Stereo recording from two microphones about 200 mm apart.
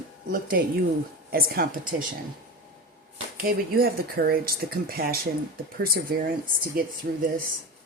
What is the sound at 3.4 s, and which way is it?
Speech, 50° right (ahead or behind).